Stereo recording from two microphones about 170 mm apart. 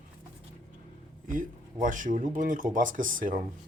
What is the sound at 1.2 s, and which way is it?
Speech, 50° right (ahead or behind).